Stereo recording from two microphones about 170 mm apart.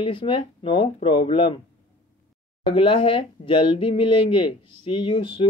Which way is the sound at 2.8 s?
30° left (ahead or behind).